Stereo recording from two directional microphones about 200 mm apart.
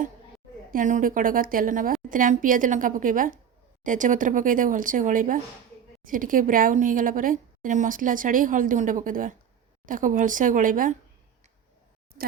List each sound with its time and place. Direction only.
0.7 s a woman's voice: 40° right (ahead or behind)